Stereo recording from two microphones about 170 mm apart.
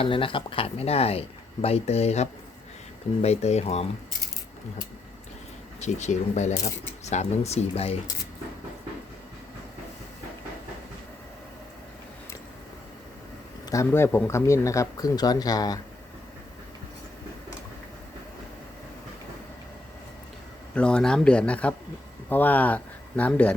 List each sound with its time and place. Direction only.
0.0 s speech: 30° left (ahead or behind)
5.8 s speech: 45° left (ahead or behind)
13.7 s speech: 15° left (ahead or behind)
20.7 s speech: 5° left (ahead or behind)